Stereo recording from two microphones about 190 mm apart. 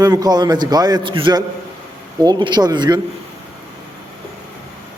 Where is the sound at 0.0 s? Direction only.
20° right (ahead or behind).